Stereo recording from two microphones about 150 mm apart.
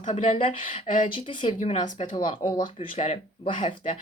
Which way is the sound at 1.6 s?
55° left (ahead or behind).